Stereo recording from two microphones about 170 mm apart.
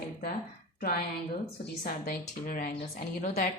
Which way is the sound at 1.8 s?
55° left (ahead or behind).